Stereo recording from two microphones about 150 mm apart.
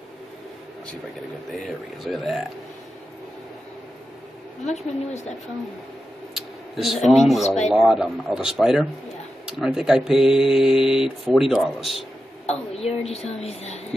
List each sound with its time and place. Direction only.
1.5 s speech: centre (ahead or behind)
4.6 s a woman's voice: 50° left (ahead or behind)
6.3 s speech: centre (ahead or behind)
12.4 s a woman's voice: 45° left (ahead or behind)